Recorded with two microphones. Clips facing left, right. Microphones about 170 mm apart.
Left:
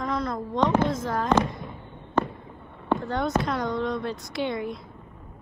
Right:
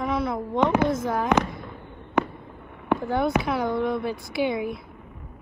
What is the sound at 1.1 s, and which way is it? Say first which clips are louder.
Speech: right 1 dB; 10° right (ahead or behind).